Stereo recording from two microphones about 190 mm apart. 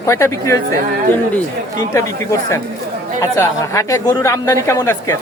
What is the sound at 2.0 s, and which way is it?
A man's voice, 15° left (ahead or behind).